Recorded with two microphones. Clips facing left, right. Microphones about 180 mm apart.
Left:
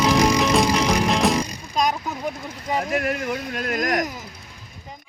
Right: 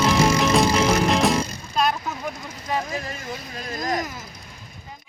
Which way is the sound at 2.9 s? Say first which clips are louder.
Left 7 dB; 70° left (ahead or behind).